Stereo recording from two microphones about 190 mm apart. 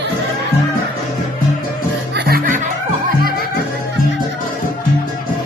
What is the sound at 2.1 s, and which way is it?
Music, 50° right (ahead or behind).